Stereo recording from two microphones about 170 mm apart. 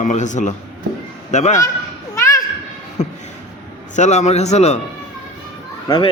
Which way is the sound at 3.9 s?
45° left (ahead or behind).